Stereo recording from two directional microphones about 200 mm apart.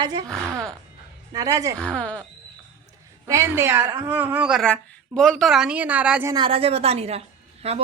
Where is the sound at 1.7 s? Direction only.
5° left (ahead or behind).